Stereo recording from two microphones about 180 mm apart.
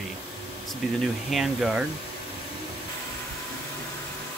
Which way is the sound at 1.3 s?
Centre (ahead or behind).